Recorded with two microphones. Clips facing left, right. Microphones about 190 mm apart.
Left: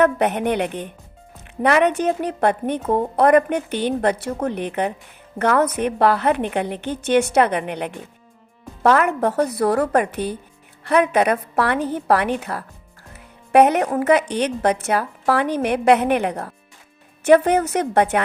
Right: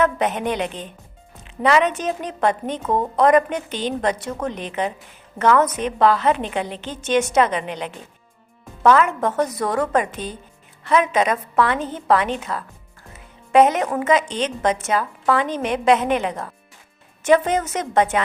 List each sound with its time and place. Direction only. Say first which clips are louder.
0.0 s a woman's voice: left 3 dB; 60° left (ahead or behind)
13.1 s music: left 1 dB; 60° left (ahead or behind)
13.9 s a woman's voice: left 2 dB; 60° left (ahead or behind)